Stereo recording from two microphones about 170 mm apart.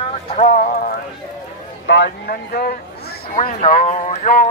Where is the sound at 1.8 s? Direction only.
85° left; by 2.7 s 65° left (ahead or behind).